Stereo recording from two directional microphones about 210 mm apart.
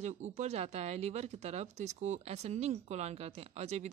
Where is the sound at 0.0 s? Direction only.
35° right (ahead or behind).